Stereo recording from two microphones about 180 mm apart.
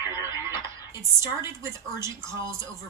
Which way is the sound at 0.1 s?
15° right (ahead or behind).